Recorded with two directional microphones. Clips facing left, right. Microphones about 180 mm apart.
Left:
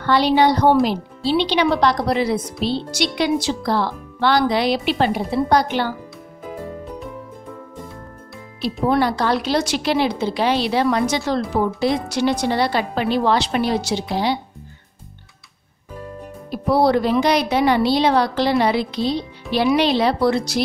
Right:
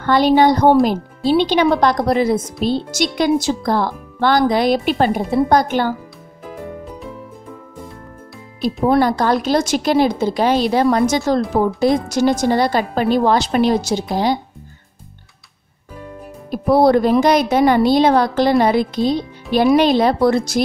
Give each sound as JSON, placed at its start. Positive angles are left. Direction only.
{"t": 0.0, "sound": "speech", "side_deg": -45}
{"t": 8.8, "sound": "speech", "side_deg": -45}
{"t": 16.4, "sound": "speech", "side_deg": -50}